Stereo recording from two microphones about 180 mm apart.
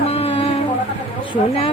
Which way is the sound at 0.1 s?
35° left (ahead or behind).